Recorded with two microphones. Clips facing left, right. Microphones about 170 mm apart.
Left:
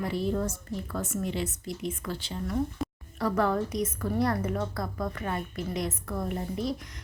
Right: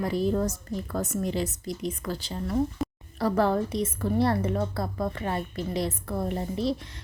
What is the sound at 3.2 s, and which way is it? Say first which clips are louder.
A woman's voice: right 3 dB; 30° right (ahead or behind).